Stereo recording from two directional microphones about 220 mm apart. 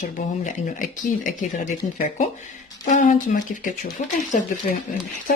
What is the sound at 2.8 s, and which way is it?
Speech, 35° left (ahead or behind).